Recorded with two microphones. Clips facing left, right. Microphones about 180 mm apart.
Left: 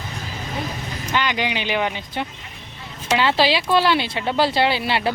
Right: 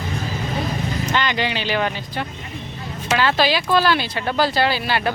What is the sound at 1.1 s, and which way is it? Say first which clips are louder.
Speech: left 1 dB; 10° left (ahead or behind).